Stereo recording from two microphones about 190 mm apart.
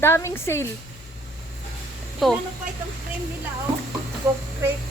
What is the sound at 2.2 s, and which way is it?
Speech, centre (ahead or behind).